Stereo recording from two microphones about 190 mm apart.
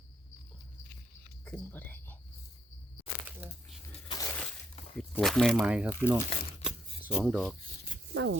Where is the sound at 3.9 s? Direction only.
25° left (ahead or behind).